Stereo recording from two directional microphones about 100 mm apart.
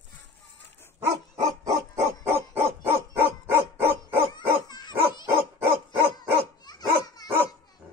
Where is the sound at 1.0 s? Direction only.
30° right (ahead or behind).